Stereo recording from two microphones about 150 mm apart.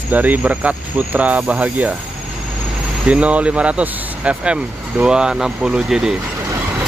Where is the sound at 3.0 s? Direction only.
10° right (ahead or behind).